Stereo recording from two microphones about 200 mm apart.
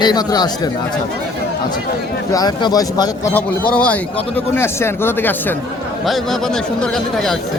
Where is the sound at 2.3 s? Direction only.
20° left (ahead or behind).